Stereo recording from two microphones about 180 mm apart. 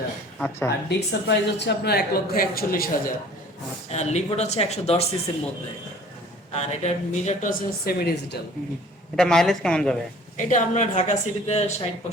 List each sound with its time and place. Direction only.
0.3 s speech: 5° left (ahead or behind)
0.9 s speech: 70° left (ahead or behind)
3.8 s speech: 40° left (ahead or behind)
6.5 s a woman's voice: 35° left (ahead or behind); by 8.4 s 65° left (ahead or behind)
9.1 s speech: 5° left (ahead or behind)
10.3 s speech: 45° left (ahead or behind)